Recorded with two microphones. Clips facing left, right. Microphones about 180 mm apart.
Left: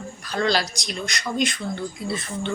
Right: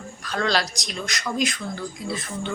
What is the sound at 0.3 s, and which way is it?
Speech, centre (ahead or behind).